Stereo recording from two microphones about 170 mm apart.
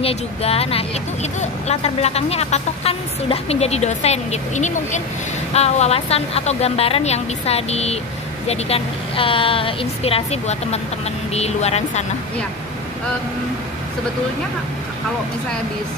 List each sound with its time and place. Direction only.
0.0 s speech: 35° left (ahead or behind)